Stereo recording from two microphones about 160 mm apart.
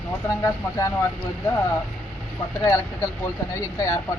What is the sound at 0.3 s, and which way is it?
Speech, 20° left (ahead or behind).